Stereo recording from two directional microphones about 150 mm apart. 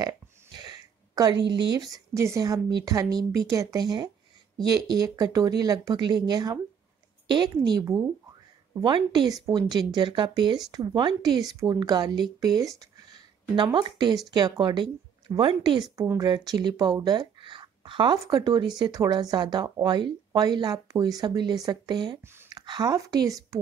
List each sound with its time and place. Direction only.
0.6 s speech: 25° right (ahead or behind)
12.7 s a sound: 25° right (ahead or behind)
13.7 s speech: 30° right (ahead or behind)
22.2 s speech: 15° right (ahead or behind)
22.5 s speech: 25° right (ahead or behind)